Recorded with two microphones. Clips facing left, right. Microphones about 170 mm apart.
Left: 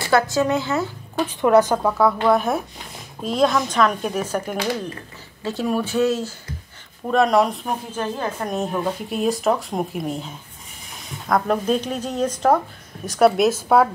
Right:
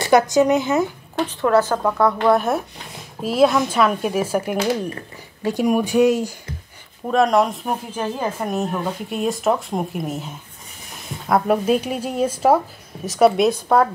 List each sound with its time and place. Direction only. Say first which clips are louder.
0.0 s speech: right 4 dB; 20° right (ahead or behind)
1.1 s a woman's voice: left 2 dB; 15° left (ahead or behind)
1.8 s speech: even; 5° left (ahead or behind); by 6.3 s 15° right (ahead or behind)
7.1 s speech: even; centre (ahead or behind)